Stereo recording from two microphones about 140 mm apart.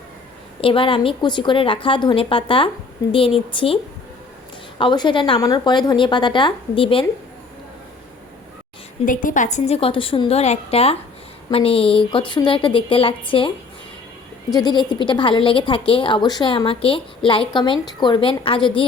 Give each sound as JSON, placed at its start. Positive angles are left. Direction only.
{"t": 0.6, "sound": "a woman's voice", "side_deg": 40}
{"t": 4.8, "sound": "a woman's voice", "side_deg": 35}
{"t": 9.0, "sound": "a woman's voice", "side_deg": 70}
{"t": 14.5, "sound": "a woman's voice", "side_deg": 30}